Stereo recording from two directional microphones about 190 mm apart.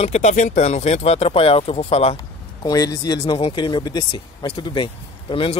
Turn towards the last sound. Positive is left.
turn(degrees=30)  # may be behind; listen again after turning